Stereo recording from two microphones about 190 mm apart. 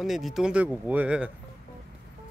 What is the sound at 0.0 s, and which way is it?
Speech, centre (ahead or behind).